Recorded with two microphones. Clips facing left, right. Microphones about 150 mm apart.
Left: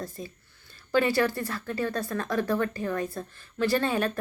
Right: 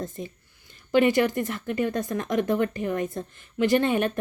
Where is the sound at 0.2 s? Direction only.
20° right (ahead or behind).